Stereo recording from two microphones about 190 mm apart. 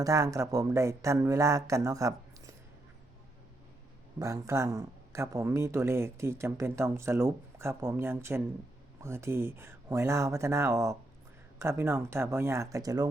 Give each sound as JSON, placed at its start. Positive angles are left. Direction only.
{"t": 0.0, "sound": "speech", "side_deg": -15}
{"t": 4.2, "sound": "speech", "side_deg": -15}